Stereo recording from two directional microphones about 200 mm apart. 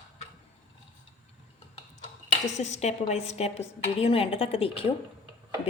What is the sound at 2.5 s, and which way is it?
A woman's voice, 35° left (ahead or behind).